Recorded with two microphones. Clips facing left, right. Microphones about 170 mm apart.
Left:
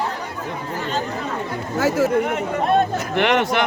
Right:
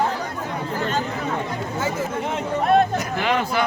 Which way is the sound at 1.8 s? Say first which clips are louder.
Left 8 dB; 75° left (ahead or behind).